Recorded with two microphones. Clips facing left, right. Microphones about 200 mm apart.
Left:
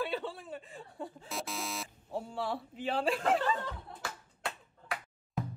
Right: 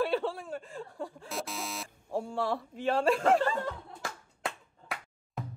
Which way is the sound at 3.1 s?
50° right (ahead or behind).